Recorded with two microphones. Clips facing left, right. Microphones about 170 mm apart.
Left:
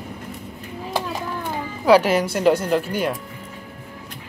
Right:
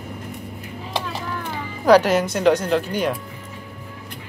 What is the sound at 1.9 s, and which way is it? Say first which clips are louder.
Speech: right 1 dB; 10° left (ahead or behind).